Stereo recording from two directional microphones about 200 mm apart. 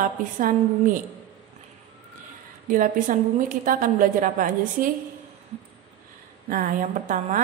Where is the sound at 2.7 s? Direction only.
40° right (ahead or behind).